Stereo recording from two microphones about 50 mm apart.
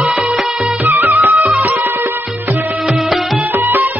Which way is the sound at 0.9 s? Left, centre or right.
Right.